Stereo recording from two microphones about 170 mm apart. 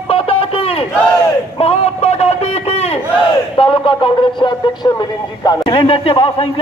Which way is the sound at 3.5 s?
30° left (ahead or behind).